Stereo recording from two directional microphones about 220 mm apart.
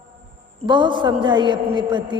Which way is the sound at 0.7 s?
20° right (ahead or behind).